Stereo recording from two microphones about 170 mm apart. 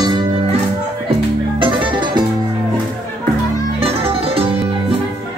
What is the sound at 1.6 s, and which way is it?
Music, 30° right (ahead or behind).